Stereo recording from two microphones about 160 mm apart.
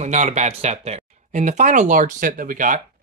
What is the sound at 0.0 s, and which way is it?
Speech, 45° right (ahead or behind).